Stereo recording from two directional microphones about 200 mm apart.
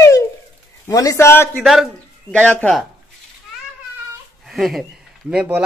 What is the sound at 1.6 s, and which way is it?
A man's voice, centre (ahead or behind).